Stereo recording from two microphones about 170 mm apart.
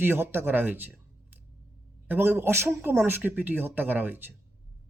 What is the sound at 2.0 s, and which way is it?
Speech, 10° right (ahead or behind).